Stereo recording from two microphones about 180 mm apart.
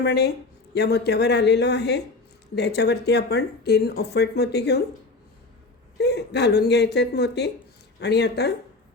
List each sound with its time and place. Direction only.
0.0 s a woman's voice: 65° left (ahead or behind)
6.0 s a woman's voice: 70° left (ahead or behind)